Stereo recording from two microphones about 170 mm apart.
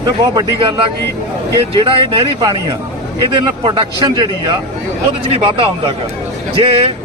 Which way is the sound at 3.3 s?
30° right (ahead or behind).